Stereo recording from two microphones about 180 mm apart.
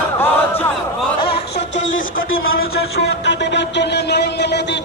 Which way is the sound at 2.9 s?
75° left (ahead or behind).